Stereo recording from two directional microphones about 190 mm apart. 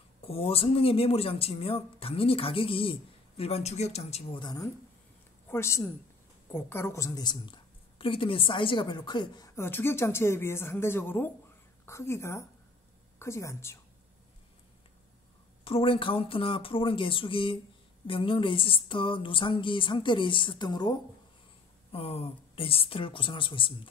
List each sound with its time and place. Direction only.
0.2 s a woman's voice: 30° left (ahead or behind); by 13.7 s 15° left (ahead or behind)
15.6 s speech: 30° left (ahead or behind)
21.9 s speech: 30° left (ahead or behind)